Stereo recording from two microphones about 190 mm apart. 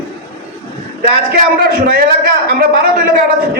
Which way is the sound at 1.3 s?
50° right (ahead or behind).